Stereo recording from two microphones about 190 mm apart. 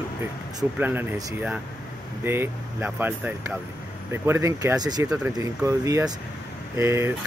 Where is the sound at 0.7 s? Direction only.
10° right (ahead or behind).